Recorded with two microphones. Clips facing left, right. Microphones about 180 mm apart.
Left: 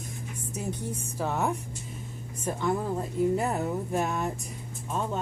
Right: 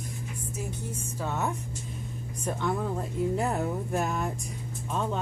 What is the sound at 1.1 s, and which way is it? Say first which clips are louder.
Speech: left 3 dB; 10° left (ahead or behind).